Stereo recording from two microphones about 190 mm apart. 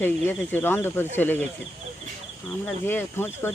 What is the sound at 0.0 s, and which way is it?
Speech, 10° left (ahead or behind).